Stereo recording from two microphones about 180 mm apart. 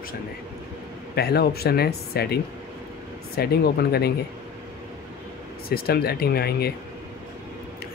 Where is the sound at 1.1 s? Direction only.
65° left (ahead or behind).